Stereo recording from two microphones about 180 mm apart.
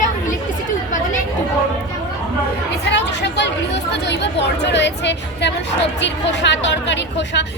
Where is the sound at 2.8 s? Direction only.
75° left (ahead or behind).